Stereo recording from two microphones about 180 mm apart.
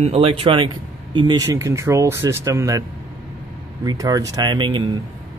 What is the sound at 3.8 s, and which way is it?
Speech, 20° right (ahead or behind).